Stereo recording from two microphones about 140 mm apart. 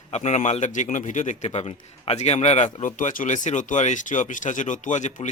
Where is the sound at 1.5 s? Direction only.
45° left (ahead or behind).